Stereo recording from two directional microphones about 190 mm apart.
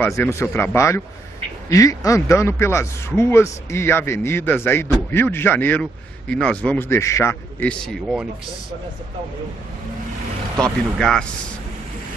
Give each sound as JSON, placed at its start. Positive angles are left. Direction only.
{"t": 0.0, "sound": "speech", "side_deg": 10}
{"t": 7.8, "sound": "speech", "side_deg": -5}
{"t": 11.0, "sound": "speech", "side_deg": 0}